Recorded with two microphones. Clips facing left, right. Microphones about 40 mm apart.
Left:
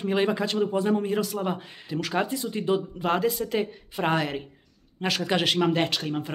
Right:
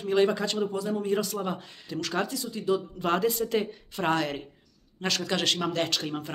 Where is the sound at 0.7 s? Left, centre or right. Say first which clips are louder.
Left 6 dB; left.